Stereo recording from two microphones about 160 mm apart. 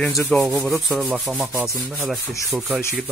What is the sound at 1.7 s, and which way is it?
Rub, 20° right (ahead or behind).